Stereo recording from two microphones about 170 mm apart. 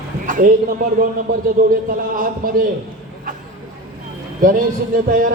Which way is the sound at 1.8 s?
55° right (ahead or behind).